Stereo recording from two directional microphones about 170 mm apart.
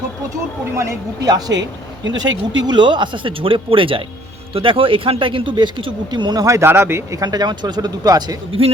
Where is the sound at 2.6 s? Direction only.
25° right (ahead or behind).